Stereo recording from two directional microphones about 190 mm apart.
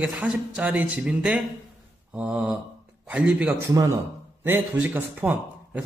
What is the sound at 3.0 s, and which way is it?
A man's voice, 5° right (ahead or behind).